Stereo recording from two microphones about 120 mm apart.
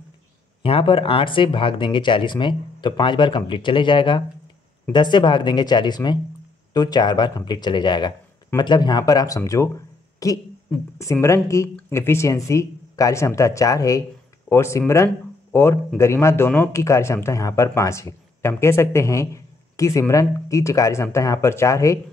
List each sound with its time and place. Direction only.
0.6 s speech: 50° left (ahead or behind); by 22.0 s 25° left (ahead or behind)